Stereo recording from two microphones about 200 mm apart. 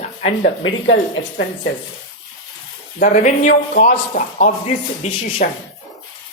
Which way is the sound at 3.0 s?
40° left (ahead or behind).